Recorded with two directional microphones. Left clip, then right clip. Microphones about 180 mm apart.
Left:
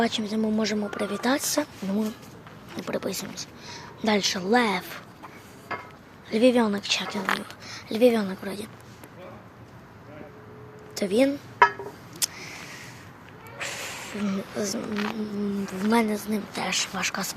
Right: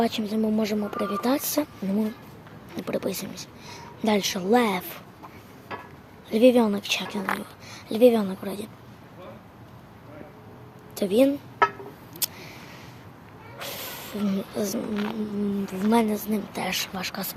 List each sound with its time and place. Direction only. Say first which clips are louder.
0.0 s speech: even; 10° right (ahead or behind)
6.3 s speech: right 2 dB; 20° right (ahead or behind)
10.9 s a woman's voice: right 2 dB; 15° right (ahead or behind)
12.2 s a sound: left 2 dB; 15° right (ahead or behind)
13.6 s snake: left 2 dB; 20° right (ahead or behind)
15.1 s speech: right 1 dB; 15° right (ahead or behind)
16.9 s speech: left 3 dB; centre (ahead or behind)